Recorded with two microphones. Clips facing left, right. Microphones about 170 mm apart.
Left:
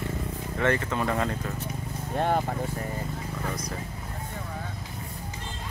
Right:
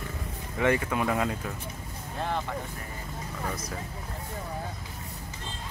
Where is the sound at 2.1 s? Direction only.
50° left (ahead or behind).